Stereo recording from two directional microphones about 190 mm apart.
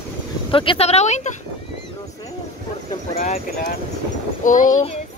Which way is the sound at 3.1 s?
45° left (ahead or behind).